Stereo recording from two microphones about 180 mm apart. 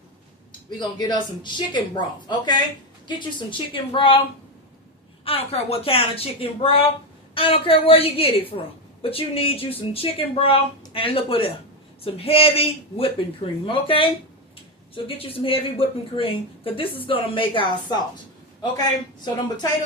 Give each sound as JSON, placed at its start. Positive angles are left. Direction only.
{"t": 0.8, "sound": "speech", "side_deg": 20}
{"t": 3.7, "sound": "speech", "side_deg": 30}
{"t": 5.2, "sound": "speech", "side_deg": 30}